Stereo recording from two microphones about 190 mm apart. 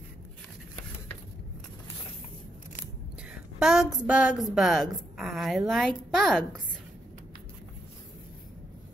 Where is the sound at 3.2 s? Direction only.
5° right (ahead or behind).